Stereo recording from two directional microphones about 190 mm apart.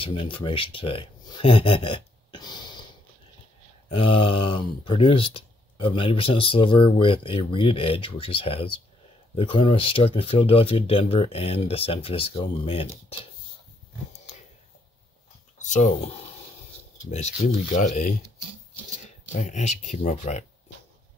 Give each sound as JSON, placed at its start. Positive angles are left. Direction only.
{"t": 0.0, "sound": "speech", "side_deg": 25}
{"t": 3.9, "sound": "speech", "side_deg": 30}
{"t": 15.6, "sound": "speech", "side_deg": 40}
{"t": 17.1, "sound": "speech", "side_deg": 35}
{"t": 19.3, "sound": "speech", "side_deg": 40}